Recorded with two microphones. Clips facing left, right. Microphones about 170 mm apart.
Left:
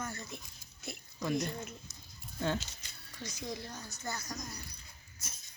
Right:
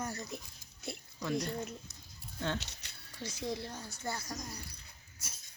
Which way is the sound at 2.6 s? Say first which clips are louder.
Left 1 dB; 65° right (ahead or behind).